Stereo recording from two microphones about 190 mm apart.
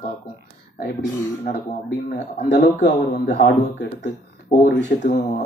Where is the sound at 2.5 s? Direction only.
40° left (ahead or behind).